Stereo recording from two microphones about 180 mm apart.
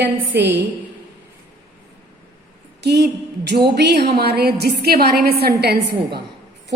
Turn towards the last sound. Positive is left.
turn(degrees=-65)  # may be behind; listen again after turning